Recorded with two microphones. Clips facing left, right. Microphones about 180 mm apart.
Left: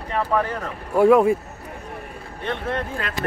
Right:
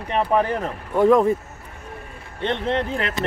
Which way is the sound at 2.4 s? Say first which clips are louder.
Right 4 dB; 25° right (ahead or behind).